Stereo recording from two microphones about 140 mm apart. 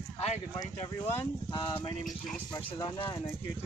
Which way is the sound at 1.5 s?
40° left (ahead or behind).